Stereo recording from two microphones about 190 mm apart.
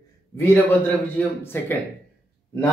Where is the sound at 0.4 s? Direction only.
10° left (ahead or behind).